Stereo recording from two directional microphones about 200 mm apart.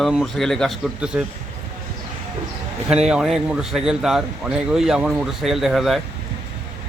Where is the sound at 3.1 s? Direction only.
Centre (ahead or behind).